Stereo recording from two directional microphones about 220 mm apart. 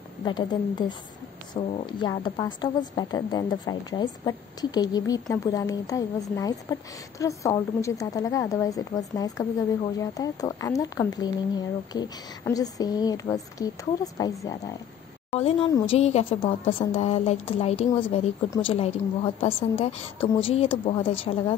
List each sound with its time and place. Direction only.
0.2 s a woman's voice: 20° left (ahead or behind)
15.3 s a woman's voice: 25° left (ahead or behind)